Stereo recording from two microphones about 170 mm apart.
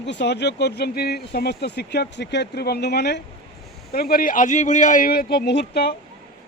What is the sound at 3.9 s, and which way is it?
Speech, 65° left (ahead or behind).